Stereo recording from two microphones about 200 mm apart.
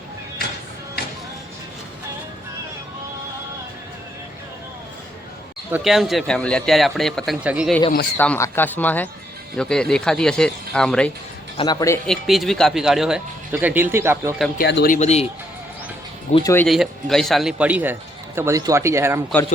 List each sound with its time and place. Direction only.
1.0 s music: 50° left (ahead or behind)
5.7 s speech: centre (ahead or behind)
8.2 s speech: 10° left (ahead or behind)
11.5 s a man's voice: 20° left (ahead or behind)
12.0 s speech: centre (ahead or behind)
14.6 s speech: 55° left (ahead or behind)
14.9 s speech: 35° left (ahead or behind)
16.3 s speech: 15° left (ahead or behind)
16.6 s speech: centre (ahead or behind)